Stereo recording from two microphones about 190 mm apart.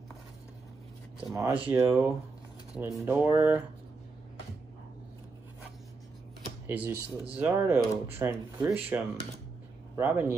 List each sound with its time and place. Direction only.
1.3 s speech: 15° right (ahead or behind)
6.7 s speech: 10° right (ahead or behind)